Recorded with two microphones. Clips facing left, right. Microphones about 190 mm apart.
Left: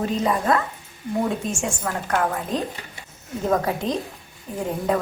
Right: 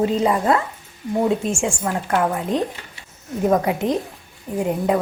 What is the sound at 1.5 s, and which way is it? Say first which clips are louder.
A woman's voice: right 4 dB; 25° right (ahead or behind).